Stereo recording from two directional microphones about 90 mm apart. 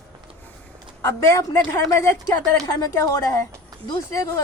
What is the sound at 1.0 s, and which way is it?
Speech, 35° left (ahead or behind).